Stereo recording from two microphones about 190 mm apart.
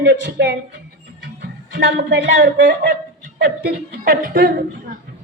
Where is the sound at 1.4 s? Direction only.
50° right (ahead or behind).